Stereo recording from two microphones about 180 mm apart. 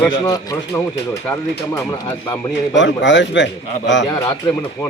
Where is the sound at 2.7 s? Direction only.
90° left.